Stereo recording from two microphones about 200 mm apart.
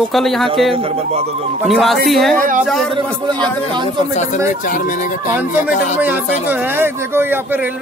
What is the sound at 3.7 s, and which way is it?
Speech, 25° right (ahead or behind).